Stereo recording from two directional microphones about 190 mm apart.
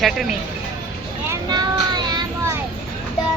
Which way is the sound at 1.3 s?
20° right (ahead or behind).